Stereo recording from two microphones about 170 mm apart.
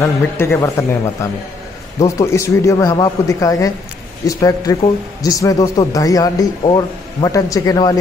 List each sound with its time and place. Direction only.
0.4 s speech: 15° left (ahead or behind)